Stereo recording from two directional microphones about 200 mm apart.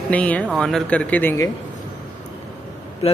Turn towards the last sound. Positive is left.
turn(degrees=30)  # may be behind; listen again after turning